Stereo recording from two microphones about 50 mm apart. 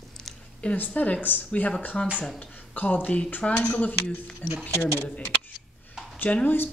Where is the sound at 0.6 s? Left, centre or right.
Left.